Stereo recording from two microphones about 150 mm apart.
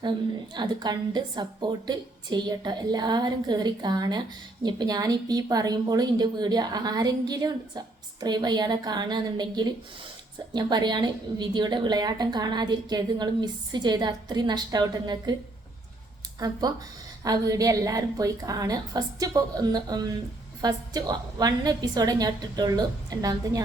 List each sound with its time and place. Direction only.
0.0 s a woman's voice: 30° right (ahead or behind)
16.4 s a woman's voice: 25° right (ahead or behind)